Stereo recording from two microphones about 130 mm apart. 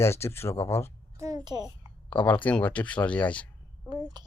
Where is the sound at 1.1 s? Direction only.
25° right (ahead or behind).